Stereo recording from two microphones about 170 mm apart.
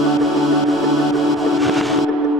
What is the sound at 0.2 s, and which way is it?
Music, centre (ahead or behind).